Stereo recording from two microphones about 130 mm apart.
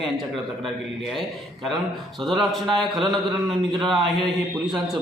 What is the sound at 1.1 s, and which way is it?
A man's voice, centre (ahead or behind).